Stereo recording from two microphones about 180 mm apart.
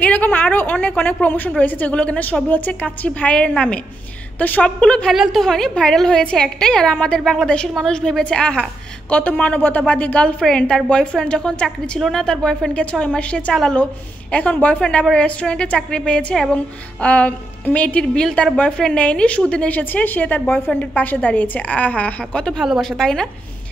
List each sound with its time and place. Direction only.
0.0 s a woman's voice: 10° left (ahead or behind)